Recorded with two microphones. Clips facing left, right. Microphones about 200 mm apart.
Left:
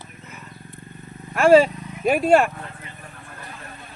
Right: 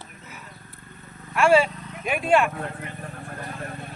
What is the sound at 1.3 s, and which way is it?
Speech, 40° left (ahead or behind).